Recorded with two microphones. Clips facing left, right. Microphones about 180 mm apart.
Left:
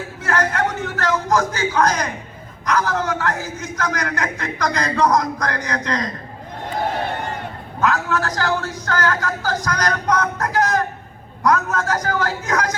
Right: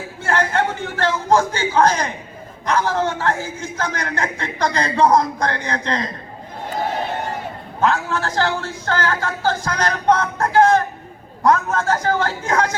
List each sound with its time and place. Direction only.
0.2 s a sound: 30° right (ahead or behind)
2.6 s a man's voice: 30° right (ahead or behind)
7.8 s a man's voice: 30° right (ahead or behind)